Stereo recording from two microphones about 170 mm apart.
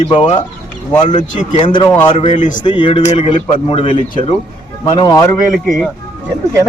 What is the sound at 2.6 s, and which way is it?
A man's voice, 30° left (ahead or behind).